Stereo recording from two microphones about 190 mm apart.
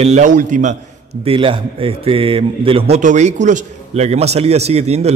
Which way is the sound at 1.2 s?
30° right (ahead or behind).